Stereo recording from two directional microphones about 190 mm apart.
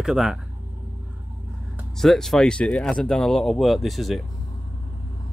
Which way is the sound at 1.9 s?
Centre (ahead or behind).